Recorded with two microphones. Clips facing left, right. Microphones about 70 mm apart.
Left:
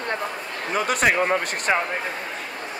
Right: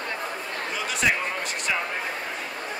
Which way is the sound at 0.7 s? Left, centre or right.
Left.